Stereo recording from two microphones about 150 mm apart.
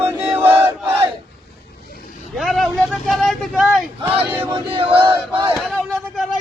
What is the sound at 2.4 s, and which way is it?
Speech, centre (ahead or behind).